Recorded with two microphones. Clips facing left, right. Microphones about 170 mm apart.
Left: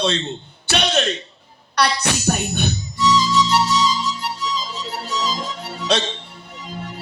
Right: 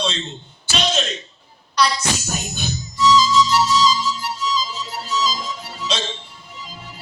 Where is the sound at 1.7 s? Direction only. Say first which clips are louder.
Even; 65° left (ahead or behind).